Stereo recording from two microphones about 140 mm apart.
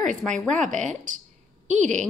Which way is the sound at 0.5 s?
60° right (ahead or behind).